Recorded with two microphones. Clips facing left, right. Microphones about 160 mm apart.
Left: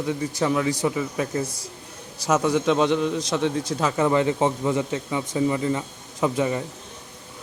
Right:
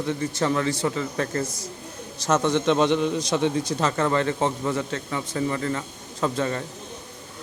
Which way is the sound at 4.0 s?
15° left (ahead or behind).